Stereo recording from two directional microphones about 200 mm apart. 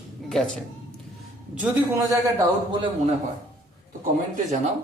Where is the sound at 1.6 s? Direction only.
10° right (ahead or behind).